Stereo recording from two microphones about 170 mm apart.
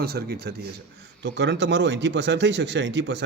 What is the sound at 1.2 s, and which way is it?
A man's voice, 90° right.